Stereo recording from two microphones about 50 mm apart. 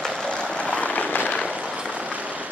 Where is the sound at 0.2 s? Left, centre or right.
Centre; by 1.4 s left.